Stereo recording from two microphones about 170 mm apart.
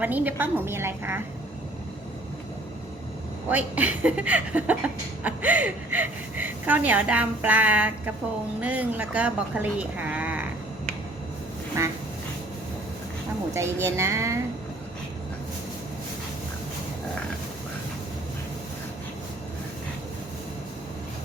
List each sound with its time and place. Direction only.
0.0 s speech: 10° right (ahead or behind)
3.5 s speech: 10° right (ahead or behind)
11.8 s speech: 20° right (ahead or behind)
13.8 s speech: 15° right (ahead or behind)